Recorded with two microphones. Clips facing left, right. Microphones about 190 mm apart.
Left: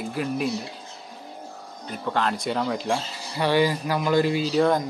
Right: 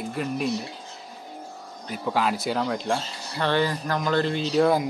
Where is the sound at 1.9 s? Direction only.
5° right (ahead or behind).